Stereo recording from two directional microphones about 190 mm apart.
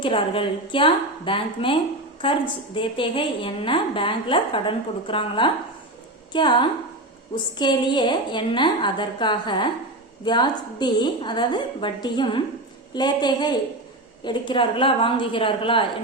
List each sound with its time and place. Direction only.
0.0 s a woman's voice: 30° left (ahead or behind)